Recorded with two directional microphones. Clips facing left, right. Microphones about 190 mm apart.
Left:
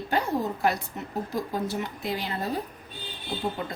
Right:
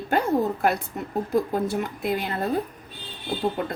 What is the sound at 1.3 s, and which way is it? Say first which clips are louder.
Speech: right 7 dB; 55° right (ahead or behind).